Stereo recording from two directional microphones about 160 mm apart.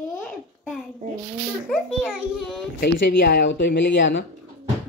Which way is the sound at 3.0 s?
90° left.